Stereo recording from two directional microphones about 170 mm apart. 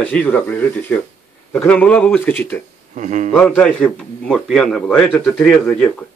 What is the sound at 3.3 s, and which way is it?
A man's voice, 5° left (ahead or behind).